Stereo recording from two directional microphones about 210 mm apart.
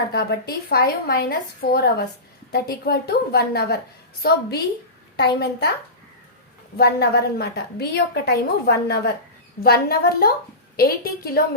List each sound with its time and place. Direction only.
0.1 s a woman's voice: 50° left (ahead or behind)
6.7 s a woman's voice: 50° left (ahead or behind)